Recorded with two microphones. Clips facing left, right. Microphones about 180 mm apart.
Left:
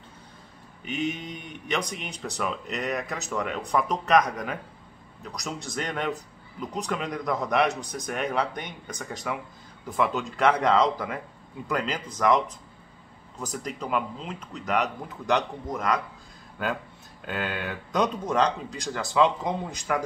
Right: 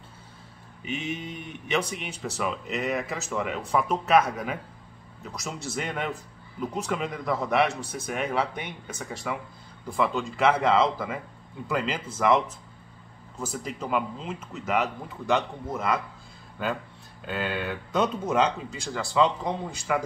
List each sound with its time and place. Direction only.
0.8 s speech: centre (ahead or behind)
13.5 s speech: 5° right (ahead or behind)
17.2 s speech: centre (ahead or behind)